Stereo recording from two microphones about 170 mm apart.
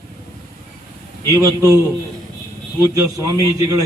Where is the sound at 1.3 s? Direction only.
20° right (ahead or behind).